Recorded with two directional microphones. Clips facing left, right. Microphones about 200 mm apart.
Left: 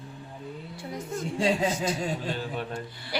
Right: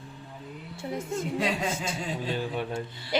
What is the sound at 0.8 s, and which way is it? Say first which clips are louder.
Speech: right 3 dB; 25° right (ahead or behind).